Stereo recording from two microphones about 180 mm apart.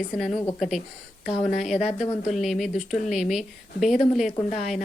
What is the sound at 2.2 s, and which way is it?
A woman's voice, centre (ahead or behind).